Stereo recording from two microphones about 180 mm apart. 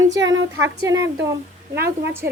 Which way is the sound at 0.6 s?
15° right (ahead or behind).